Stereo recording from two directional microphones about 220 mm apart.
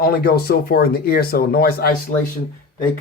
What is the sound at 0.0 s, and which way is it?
Speech, 45° left (ahead or behind).